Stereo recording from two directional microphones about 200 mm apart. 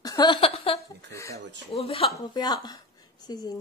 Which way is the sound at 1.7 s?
30° left (ahead or behind).